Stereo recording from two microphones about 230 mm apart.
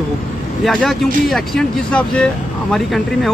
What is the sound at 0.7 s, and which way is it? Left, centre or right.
Speech, centre.